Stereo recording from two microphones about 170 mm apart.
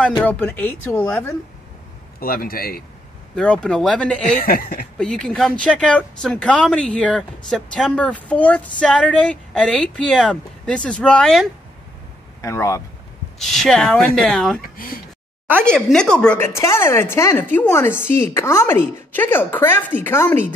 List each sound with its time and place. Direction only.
0.2 s speech: 10° left (ahead or behind)
2.1 s a man's voice: 60° left (ahead or behind)
3.3 s speech: 5° left (ahead or behind)
4.4 s a man's voice: 55° left (ahead or behind)
4.9 s speech: 5° left (ahead or behind)
12.4 s speech: 15° left (ahead or behind)
13.4 s speech: centre (ahead or behind)
14.6 s a man's voice: 55° left (ahead or behind)
15.6 s speech: 5° left (ahead or behind)